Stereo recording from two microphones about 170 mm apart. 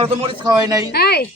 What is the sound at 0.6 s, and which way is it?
Speech, 20° right (ahead or behind).